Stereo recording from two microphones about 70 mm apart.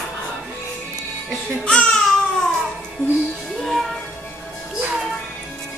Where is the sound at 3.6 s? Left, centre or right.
Centre.